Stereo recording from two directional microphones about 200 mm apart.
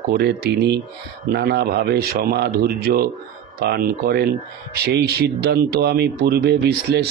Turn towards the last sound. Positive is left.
turn(degrees=-60)  # may be behind; listen again after turning